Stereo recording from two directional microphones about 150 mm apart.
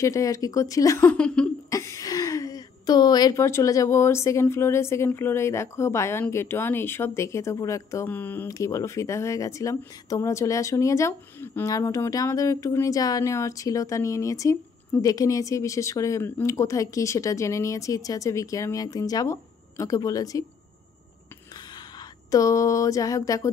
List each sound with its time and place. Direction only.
0.0 s a woman's voice: 20° left (ahead or behind)
1.1 s a sound: 5° left (ahead or behind)
1.7 s a woman's voice: 20° left (ahead or behind)
22.3 s a woman's voice: 20° left (ahead or behind)